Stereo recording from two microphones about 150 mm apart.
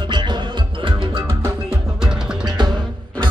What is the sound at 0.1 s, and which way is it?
Music, 30° right (ahead or behind).